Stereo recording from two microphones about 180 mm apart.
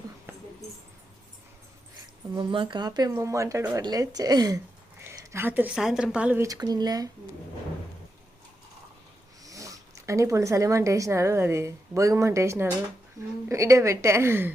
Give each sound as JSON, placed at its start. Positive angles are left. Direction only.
{"t": 2.3, "sound": "speech", "side_deg": -25}
{"t": 9.4, "sound": "a woman's voice", "side_deg": -20}